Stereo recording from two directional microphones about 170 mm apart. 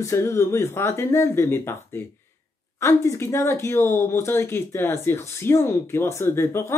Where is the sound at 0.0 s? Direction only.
15° left (ahead or behind).